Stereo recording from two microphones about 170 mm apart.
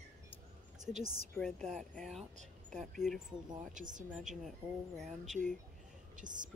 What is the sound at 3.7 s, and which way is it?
Speech, 50° right (ahead or behind).